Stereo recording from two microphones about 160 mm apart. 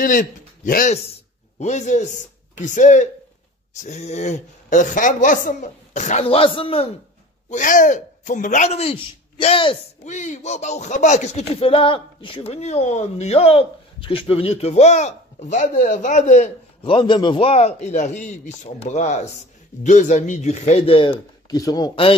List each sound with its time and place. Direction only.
0.0 s a man's voice: 55° left (ahead or behind); by 6.9 s 35° left (ahead or behind)
7.4 s speech: 55° left (ahead or behind); by 9.8 s 35° left (ahead or behind)
10.0 s speech: 50° left (ahead or behind)
16.8 s speech: 30° left (ahead or behind)
21.5 s a man's voice: 25° left (ahead or behind)